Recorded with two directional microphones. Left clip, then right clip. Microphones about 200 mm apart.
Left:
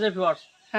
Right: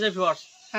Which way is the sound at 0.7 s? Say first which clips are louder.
Left 3 dB; 15° left (ahead or behind).